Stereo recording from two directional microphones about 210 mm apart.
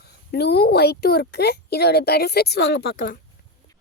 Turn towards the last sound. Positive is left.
turn(degrees=45)  # may be behind; listen again after turning